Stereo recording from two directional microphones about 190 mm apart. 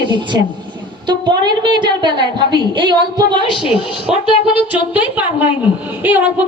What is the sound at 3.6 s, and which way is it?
A woman's voice, 5° right (ahead or behind).